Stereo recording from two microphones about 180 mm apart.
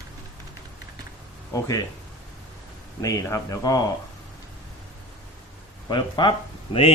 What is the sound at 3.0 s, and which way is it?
Speech, 20° left (ahead or behind).